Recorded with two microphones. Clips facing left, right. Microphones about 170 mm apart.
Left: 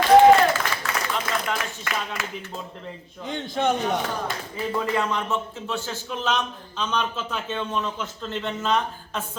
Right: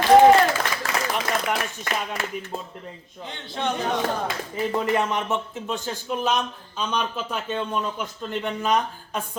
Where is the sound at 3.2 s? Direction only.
50° left (ahead or behind).